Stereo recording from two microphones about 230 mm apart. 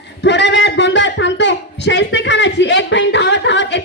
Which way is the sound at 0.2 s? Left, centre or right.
Left.